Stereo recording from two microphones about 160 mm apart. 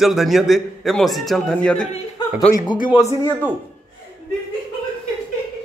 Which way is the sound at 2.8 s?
20° left (ahead or behind).